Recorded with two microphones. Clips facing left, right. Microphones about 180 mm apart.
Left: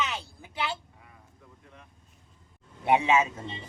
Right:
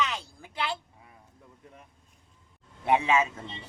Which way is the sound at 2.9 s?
5° left (ahead or behind).